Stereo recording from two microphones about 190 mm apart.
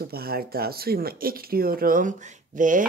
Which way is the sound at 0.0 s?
55° right (ahead or behind).